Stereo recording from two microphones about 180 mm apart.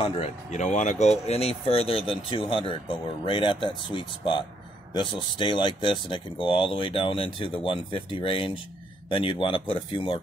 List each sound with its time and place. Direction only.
0.0 s speech: 40° left (ahead or behind)